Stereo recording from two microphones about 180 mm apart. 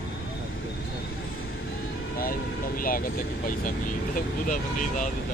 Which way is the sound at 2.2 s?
50° left (ahead or behind).